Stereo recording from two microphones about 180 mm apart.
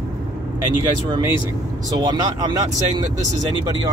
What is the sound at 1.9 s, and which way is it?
Speech, 20° right (ahead or behind).